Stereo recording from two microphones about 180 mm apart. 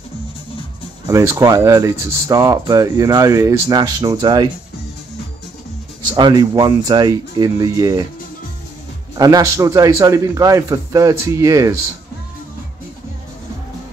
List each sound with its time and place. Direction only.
1.0 s speech: 15° right (ahead or behind)
6.1 s speech: 25° right (ahead or behind)
9.1 s a man's voice: 20° right (ahead or behind)